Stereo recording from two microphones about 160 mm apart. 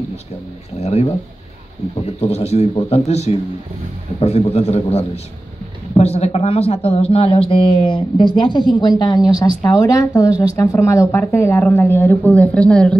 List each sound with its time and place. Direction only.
0.7 s a woman's voice: 40° left (ahead or behind); by 12.9 s 5° left (ahead or behind)